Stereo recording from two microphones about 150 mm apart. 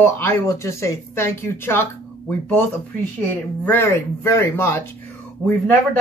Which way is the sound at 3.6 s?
15° left (ahead or behind).